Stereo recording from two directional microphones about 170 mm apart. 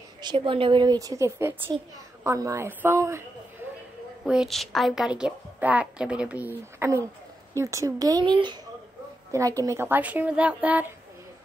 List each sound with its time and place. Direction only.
0.2 s a woman's voice: 30° right (ahead or behind)
4.2 s a woman's voice: centre (ahead or behind)